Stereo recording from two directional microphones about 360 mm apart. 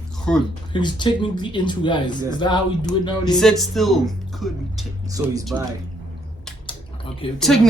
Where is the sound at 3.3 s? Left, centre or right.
Centre.